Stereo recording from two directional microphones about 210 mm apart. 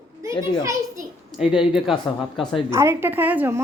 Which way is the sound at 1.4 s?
5° right (ahead or behind).